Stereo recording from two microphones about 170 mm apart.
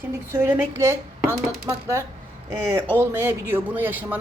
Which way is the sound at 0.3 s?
15° right (ahead or behind).